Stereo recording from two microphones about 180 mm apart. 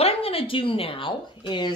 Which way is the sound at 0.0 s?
35° left (ahead or behind).